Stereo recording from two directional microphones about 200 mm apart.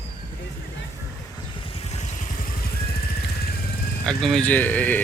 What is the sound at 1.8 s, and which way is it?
Vehicle, 35° left (ahead or behind).